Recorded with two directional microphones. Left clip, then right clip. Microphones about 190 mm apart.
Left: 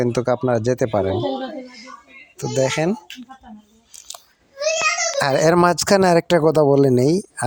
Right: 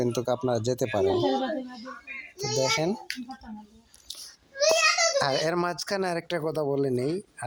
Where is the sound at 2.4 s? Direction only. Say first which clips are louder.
Left 6 dB; 30° left (ahead or behind).